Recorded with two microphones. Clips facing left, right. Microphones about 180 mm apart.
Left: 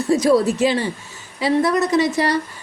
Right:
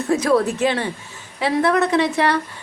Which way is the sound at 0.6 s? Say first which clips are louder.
Left 2 dB; 60° right (ahead or behind).